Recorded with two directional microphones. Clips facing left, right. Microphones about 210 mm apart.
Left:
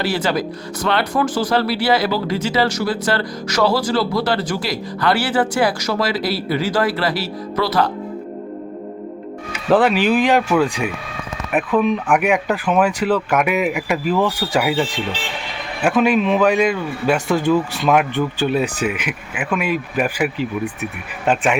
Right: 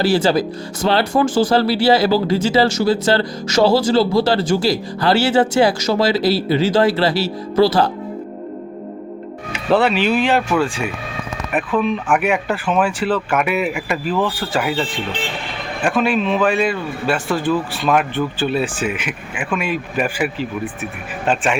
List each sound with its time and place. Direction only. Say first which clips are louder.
0.0 s speech: right 4 dB; 30° right (ahead or behind)
9.8 s speech: left 1 dB; 10° left (ahead or behind)